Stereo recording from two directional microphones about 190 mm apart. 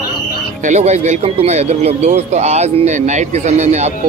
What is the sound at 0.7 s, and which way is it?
Speech, 35° right (ahead or behind).